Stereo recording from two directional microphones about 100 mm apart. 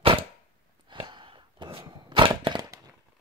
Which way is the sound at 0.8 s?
50° right (ahead or behind).